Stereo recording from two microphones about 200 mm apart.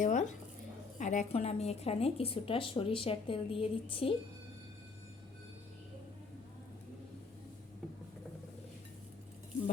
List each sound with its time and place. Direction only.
0.0 s zipper: 40° left (ahead or behind)
0.9 s a woman's voice: 40° left (ahead or behind)